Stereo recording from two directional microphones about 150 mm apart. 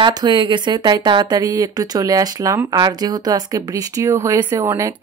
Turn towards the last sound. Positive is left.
turn(degrees=-15)  # may be behind; listen again after turning